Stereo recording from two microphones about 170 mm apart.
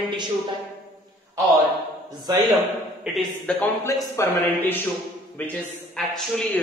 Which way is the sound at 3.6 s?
15° left (ahead or behind).